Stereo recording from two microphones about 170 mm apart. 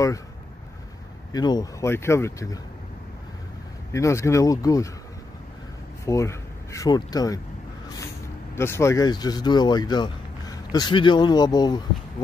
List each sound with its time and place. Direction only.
1.3 s speech: 25° left (ahead or behind)
3.9 s speech: 15° left (ahead or behind)
6.0 s speech: 15° left (ahead or behind)
8.5 s speech: 15° left (ahead or behind)